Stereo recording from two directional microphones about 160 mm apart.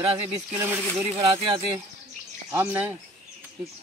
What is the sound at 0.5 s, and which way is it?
Speech, 10° right (ahead or behind).